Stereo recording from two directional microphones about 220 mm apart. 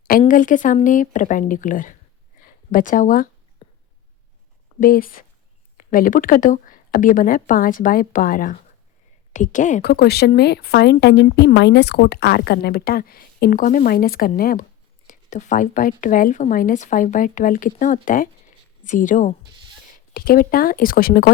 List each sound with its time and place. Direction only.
0.3 s a woman's voice: 35° left (ahead or behind)
3.6 s a sound: 25° left (ahead or behind)
4.8 s a woman's voice: 40° left (ahead or behind)